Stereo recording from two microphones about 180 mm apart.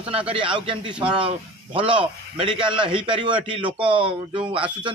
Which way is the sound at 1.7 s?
30° right (ahead or behind).